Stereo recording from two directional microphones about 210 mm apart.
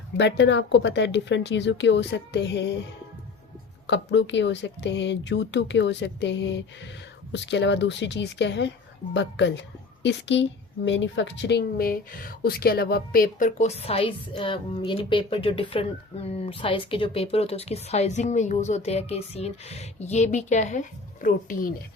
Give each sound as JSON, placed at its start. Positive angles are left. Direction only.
{"t": 0.2, "sound": "speech", "side_deg": 60}
{"t": 3.8, "sound": "speech", "side_deg": 60}
{"t": 10.0, "sound": "speech", "side_deg": 55}